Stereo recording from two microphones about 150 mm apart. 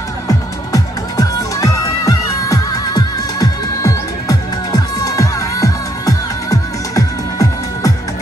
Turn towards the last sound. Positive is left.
turn(degrees=25)  # may be behind; listen again after turning